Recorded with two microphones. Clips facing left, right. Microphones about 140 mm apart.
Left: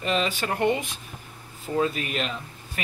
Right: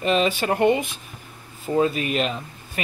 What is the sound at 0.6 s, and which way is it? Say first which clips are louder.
Speech: right 4 dB; 10° right (ahead or behind).